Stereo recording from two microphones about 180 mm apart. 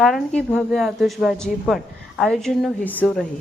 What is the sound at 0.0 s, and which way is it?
Speech, centre (ahead or behind).